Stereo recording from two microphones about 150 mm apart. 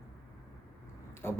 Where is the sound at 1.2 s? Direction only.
15° left (ahead or behind).